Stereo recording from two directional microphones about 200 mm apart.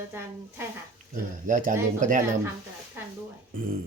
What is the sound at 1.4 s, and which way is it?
Speech, 40° right (ahead or behind).